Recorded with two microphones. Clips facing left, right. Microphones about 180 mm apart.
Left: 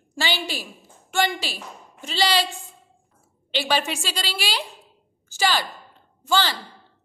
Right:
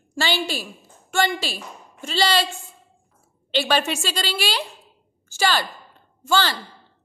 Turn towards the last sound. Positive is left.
turn(degrees=15)  # may be behind; listen again after turning